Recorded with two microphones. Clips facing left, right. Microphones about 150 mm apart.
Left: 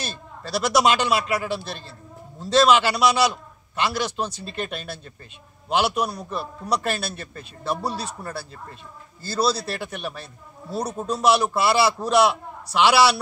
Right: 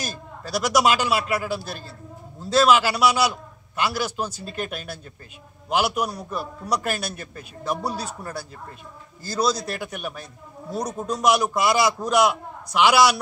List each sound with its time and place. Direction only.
0.0 s a man's voice: 10° right (ahead or behind)